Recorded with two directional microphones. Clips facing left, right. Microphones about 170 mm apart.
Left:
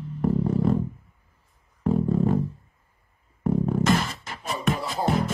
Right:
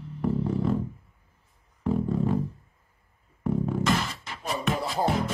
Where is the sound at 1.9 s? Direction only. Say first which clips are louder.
Left 3 dB; 45° left (ahead or behind).